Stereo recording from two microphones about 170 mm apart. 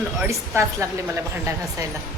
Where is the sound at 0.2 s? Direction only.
15° right (ahead or behind).